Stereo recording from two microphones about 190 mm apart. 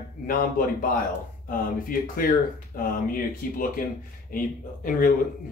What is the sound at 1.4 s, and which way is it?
Speech, 45° left (ahead or behind).